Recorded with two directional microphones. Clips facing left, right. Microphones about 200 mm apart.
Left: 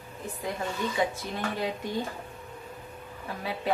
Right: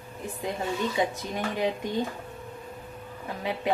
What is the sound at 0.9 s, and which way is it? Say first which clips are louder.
Speech: right 1 dB; 15° right (ahead or behind).